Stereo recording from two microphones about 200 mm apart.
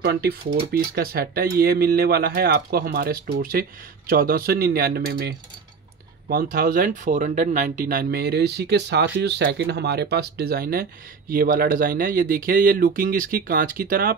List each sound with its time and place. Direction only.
0.0 s speech: 50° right (ahead or behind)